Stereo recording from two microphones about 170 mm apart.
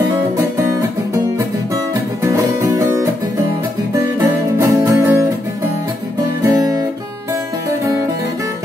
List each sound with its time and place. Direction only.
0.4 s music: 15° right (ahead or behind)
2.2 s music: 15° right (ahead or behind)
6.4 s music: 20° right (ahead or behind)